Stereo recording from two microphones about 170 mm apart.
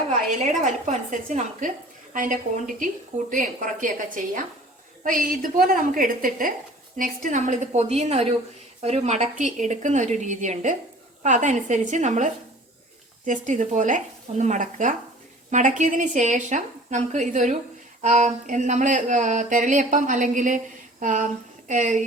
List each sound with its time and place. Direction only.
0.1 s a woman's voice: 45° right (ahead or behind)